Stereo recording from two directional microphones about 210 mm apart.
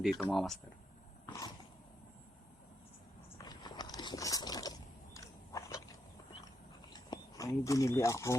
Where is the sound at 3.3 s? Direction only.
20° left (ahead or behind).